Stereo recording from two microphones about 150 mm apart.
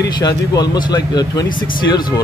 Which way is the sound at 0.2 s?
25° left (ahead or behind).